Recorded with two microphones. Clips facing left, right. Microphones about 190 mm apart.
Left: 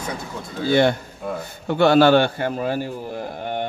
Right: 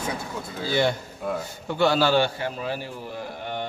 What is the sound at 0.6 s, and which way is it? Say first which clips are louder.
A man's voice: left 6 dB; 60° left (ahead or behind).